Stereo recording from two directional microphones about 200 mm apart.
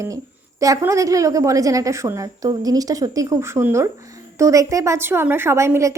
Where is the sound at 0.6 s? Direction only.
15° right (ahead or behind).